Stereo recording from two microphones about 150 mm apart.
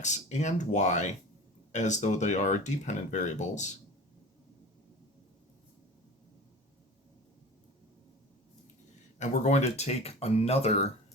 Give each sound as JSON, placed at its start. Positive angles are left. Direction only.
{"t": 0.0, "sound": "speech", "side_deg": 50}
{"t": 9.1, "sound": "speech", "side_deg": 50}